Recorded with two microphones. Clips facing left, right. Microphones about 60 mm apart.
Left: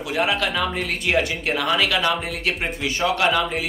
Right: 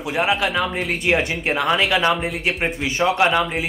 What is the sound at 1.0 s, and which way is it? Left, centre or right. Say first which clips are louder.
Speech: right 1 dB; right.